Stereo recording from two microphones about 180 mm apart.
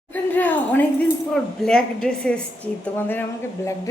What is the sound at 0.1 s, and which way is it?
A woman's voice, 10° left (ahead or behind).